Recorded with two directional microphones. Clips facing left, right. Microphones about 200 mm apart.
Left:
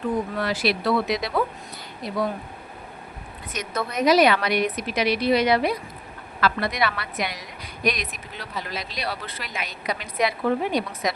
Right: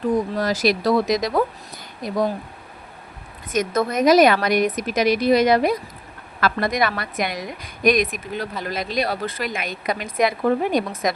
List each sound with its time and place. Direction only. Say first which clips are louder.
0.3 s a woman's voice: right 4 dB; 40° right (ahead or behind)
3.5 s a woman's voice: right 8 dB; 45° right (ahead or behind)